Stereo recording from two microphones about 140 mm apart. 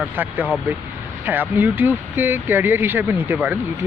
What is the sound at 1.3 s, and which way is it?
Speech, 15° right (ahead or behind).